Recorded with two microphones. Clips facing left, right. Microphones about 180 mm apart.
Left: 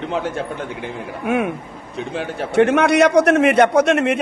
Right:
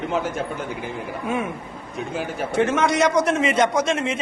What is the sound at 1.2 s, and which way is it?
A man's voice, 70° left (ahead or behind).